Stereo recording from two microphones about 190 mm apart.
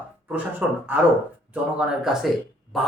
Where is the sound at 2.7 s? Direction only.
Centre (ahead or behind).